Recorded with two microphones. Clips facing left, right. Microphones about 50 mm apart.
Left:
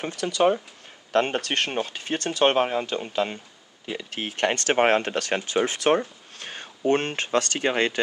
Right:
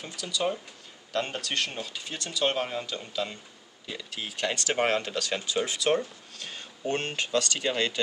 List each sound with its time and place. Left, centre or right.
0.0 s speech: left